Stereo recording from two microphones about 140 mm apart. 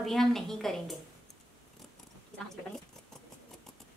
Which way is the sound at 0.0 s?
Centre (ahead or behind).